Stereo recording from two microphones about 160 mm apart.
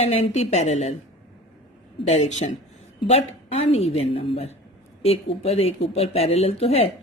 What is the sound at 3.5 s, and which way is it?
A woman's voice, 40° left (ahead or behind).